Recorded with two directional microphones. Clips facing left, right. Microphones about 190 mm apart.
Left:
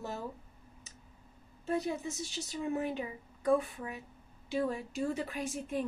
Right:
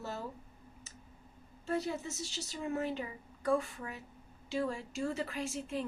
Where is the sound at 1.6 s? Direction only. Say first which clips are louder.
Left 2 dB; 15° left (ahead or behind).